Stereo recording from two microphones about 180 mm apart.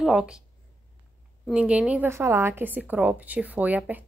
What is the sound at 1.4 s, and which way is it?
A woman's voice, 5° right (ahead or behind).